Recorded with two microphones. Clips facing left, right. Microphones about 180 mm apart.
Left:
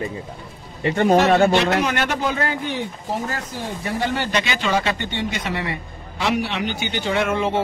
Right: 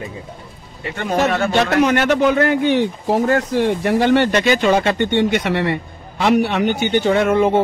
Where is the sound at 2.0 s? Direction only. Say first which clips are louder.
Right 8 dB; 65° right (ahead or behind).